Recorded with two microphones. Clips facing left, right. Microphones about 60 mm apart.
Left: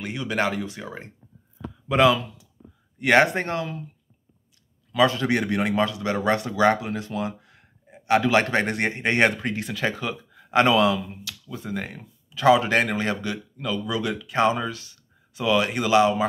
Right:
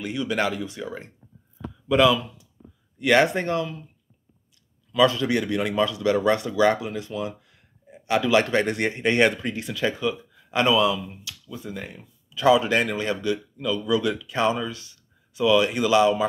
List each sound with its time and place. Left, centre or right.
0.0 s speech: left
4.9 s speech: left
9.9 s speech: left
12.4 s speech: left